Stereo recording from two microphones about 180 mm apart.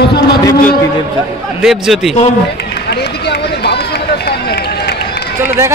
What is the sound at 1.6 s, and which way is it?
Speech, centre (ahead or behind).